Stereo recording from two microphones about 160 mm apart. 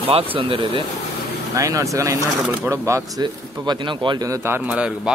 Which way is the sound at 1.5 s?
20° right (ahead or behind).